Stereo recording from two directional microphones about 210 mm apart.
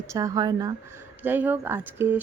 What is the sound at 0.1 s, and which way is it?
Speech, 15° right (ahead or behind).